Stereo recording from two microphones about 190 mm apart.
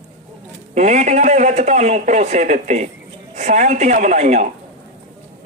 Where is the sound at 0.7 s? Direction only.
40° right (ahead or behind).